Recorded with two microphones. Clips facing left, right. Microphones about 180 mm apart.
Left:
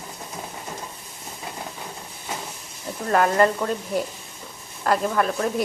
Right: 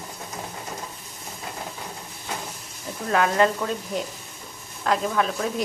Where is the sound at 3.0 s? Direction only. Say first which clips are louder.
Left 2 dB; centre (ahead or behind).